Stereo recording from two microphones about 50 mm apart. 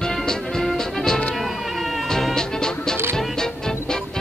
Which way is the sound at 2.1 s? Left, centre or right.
Centre.